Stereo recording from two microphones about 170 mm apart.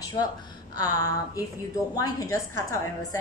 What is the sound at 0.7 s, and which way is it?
A woman's voice, 20° left (ahead or behind).